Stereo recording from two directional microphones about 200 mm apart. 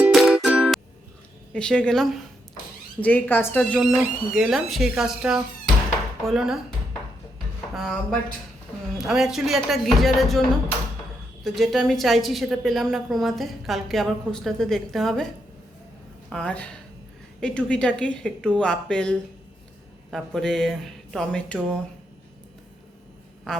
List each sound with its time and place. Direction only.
0.0 s music: centre (ahead or behind)
1.5 s speech: 5° left (ahead or behind)
3.7 s speech: 5° right (ahead or behind)
7.8 s speech: centre (ahead or behind)
11.4 s speech: centre (ahead or behind)
16.3 s speech: 5° left (ahead or behind)
23.5 s a sound: 5° left (ahead or behind)